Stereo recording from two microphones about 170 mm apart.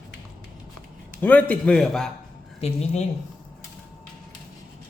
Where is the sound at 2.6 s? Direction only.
40° left (ahead or behind).